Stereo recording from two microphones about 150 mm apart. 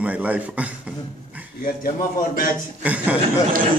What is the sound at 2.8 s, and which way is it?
Speech, 10° right (ahead or behind).